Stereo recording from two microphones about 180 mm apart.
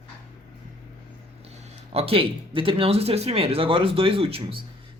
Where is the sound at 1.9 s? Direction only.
30° right (ahead or behind).